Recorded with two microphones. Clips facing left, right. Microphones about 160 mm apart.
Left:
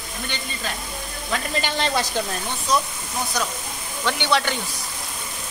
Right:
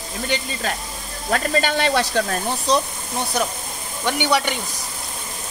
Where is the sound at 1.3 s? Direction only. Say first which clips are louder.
Right 6 dB; 55° right (ahead or behind).